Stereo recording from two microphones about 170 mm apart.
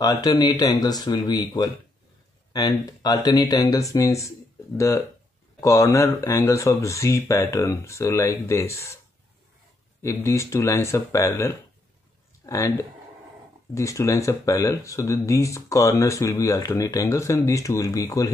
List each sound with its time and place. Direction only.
0.0 s speech: 20° left (ahead or behind)
10.0 s speech: 15° left (ahead or behind)
13.7 s speech: 20° left (ahead or behind)